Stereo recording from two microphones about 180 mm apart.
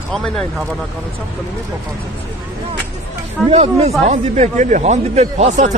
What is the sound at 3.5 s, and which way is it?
Speech, 35° right (ahead or behind).